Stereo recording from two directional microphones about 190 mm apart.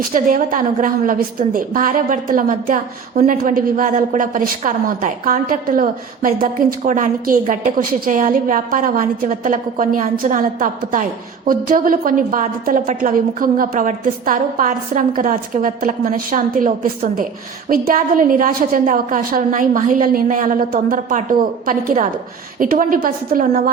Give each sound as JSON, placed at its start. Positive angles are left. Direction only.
{"t": 0.1, "sound": "a woman's voice", "side_deg": -45}